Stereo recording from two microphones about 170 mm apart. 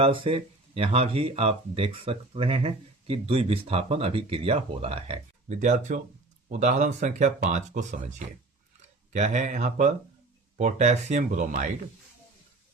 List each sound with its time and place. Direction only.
0.0 s speech: 35° right (ahead or behind)
9.1 s speech: 45° right (ahead or behind)